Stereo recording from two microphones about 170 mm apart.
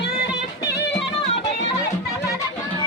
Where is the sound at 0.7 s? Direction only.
80° left.